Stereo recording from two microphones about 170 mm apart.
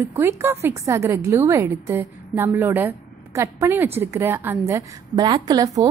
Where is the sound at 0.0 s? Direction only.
15° right (ahead or behind).